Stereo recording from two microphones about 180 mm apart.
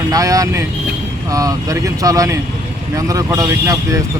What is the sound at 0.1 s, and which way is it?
Speech, 20° right (ahead or behind).